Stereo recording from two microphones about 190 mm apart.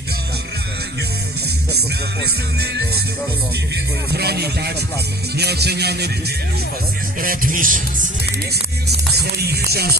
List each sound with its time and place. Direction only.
4.1 s music: 60° right (ahead or behind)
7.2 s music: 45° right (ahead or behind)
9.1 s music: 55° right (ahead or behind)